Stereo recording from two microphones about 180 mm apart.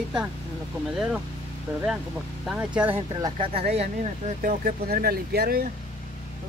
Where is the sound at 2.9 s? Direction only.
30° right (ahead or behind).